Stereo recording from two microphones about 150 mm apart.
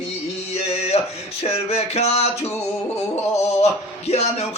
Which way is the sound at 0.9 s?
45° left (ahead or behind).